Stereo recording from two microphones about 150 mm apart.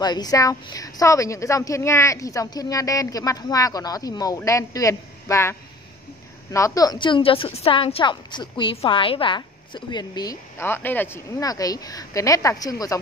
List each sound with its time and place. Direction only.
0.0 s a woman's voice: 25° left (ahead or behind)